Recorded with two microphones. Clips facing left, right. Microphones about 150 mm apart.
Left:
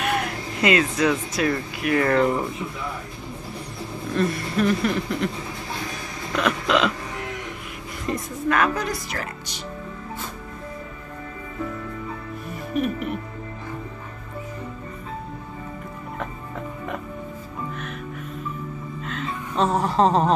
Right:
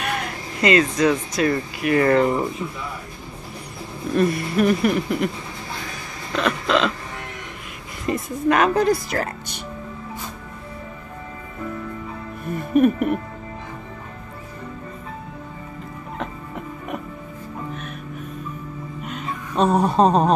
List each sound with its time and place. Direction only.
0.0 s speech: 5° left (ahead or behind)
4.2 s speech: 10° right (ahead or behind)
6.3 s a sound: 10° left (ahead or behind)
8.1 s a woman's voice: 5° right (ahead or behind)
8.5 s a woman's voice: 20° right (ahead or behind)
9.1 s speech: 45° right (ahead or behind)
12.7 s speech: 50° right (ahead or behind)
19.0 s music: 15° right (ahead or behind)